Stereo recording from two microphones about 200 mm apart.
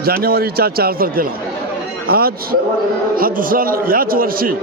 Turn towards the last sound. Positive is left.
turn(degrees=-45)  # may be behind; listen again after turning